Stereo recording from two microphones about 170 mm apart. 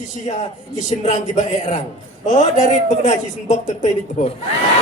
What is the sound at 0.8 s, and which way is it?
A man's voice, 45° left (ahead or behind).